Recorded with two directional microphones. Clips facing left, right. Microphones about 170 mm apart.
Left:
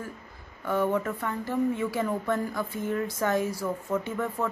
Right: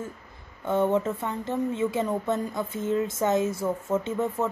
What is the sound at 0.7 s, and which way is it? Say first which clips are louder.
Speech: right 3 dB; 25° right (ahead or behind).